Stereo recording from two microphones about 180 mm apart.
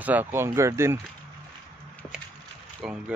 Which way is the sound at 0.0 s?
10° right (ahead or behind).